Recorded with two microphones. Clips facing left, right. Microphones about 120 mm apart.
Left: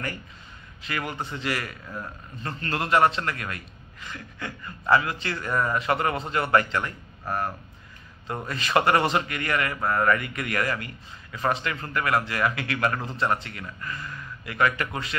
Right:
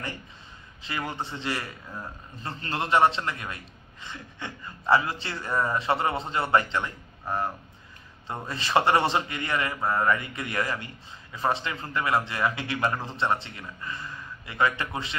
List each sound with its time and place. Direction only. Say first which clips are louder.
0.8 s a man's voice: left 1 dB; 25° right (ahead or behind)